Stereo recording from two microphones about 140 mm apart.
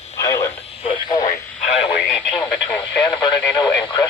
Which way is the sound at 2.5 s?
10° left (ahead or behind).